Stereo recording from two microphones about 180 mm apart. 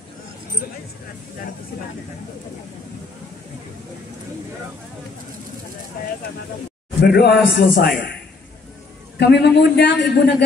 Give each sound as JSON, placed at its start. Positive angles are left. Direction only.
{"t": 7.0, "sound": "a man's voice", "side_deg": 65}
{"t": 9.2, "sound": "a man's voice", "side_deg": 70}